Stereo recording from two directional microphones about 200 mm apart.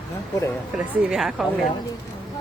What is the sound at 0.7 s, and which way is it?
Speech, centre (ahead or behind).